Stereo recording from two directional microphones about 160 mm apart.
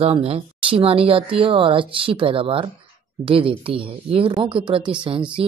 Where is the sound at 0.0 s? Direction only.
35° right (ahead or behind).